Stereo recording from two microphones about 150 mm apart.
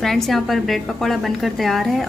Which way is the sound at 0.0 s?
Centre (ahead or behind).